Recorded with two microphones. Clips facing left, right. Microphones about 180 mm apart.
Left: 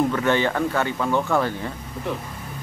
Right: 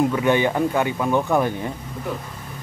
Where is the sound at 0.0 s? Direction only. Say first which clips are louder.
Right 2 dB; 15° right (ahead or behind).